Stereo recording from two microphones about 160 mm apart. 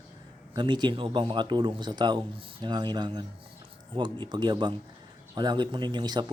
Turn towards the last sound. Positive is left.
turn(degrees=-25)  # may be behind; listen again after turning